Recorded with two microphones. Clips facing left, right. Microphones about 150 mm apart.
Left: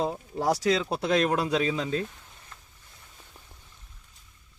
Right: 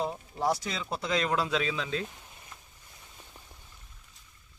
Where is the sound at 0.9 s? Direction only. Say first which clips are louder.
Left 5 dB; 60° left (ahead or behind); by 2.0 s 40° left (ahead or behind).